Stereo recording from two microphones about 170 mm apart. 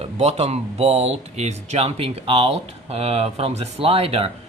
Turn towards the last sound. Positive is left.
turn(degrees=-35)  # may be behind; listen again after turning